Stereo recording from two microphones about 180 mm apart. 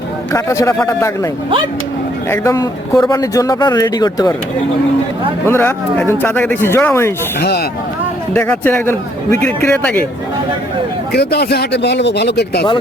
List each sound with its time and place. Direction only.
0.3 s a man's voice: 15° left (ahead or behind)
2.3 s speech: 15° left (ahead or behind)
5.5 s a man's voice: 10° left (ahead or behind)
7.3 s speech: 60° left (ahead or behind)
8.3 s a man's voice: 10° left (ahead or behind)
11.1 s speech: 65° left (ahead or behind)